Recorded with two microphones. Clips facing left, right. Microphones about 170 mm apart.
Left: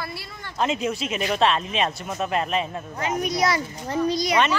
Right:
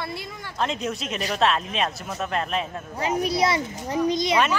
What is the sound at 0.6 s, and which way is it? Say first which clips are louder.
Speech: left 3 dB; 5° left (ahead or behind).